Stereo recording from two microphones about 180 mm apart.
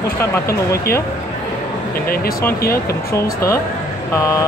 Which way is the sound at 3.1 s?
15° left (ahead or behind).